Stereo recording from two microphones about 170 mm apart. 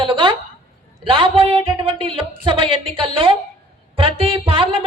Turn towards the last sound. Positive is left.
turn(degrees=-35)  # may be behind; listen again after turning